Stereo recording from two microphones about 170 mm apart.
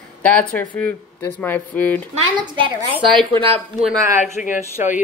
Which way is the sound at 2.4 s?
30° right (ahead or behind).